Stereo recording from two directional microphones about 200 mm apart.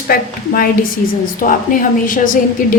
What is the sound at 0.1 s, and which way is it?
A woman's voice, 45° left (ahead or behind).